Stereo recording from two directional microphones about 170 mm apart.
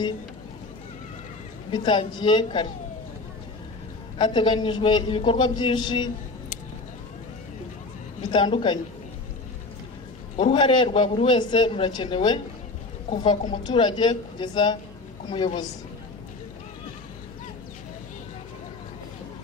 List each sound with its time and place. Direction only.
1.7 s a man's voice: 25° left (ahead or behind)
4.2 s a man's voice: 30° left (ahead or behind)
8.2 s a man's voice: 25° left (ahead or behind)
10.3 s a man's voice: 30° left (ahead or behind)